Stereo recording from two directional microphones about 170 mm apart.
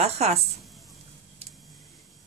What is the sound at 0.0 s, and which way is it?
Speech, 40° right (ahead or behind).